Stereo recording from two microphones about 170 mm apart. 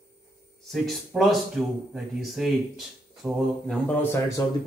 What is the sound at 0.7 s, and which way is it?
Speech, centre (ahead or behind).